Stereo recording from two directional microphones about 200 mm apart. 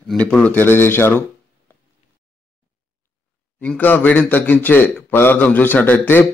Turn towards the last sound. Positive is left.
turn(degrees=10)  # may be behind; listen again after turning